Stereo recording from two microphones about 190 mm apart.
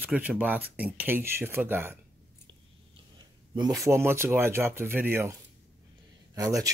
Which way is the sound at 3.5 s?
20° right (ahead or behind).